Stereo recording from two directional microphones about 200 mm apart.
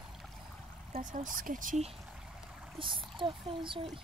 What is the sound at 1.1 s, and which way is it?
Speech, 40° right (ahead or behind).